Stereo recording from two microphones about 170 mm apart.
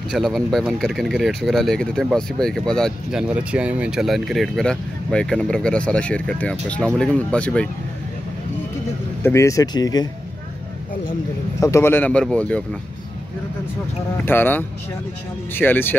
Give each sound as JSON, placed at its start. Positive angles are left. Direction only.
{"t": 0.1, "sound": "a man's voice", "side_deg": 0}
{"t": 9.2, "sound": "speech", "side_deg": 15}
{"t": 11.6, "sound": "a man's voice", "side_deg": 15}
{"t": 14.1, "sound": "a man's voice", "side_deg": 10}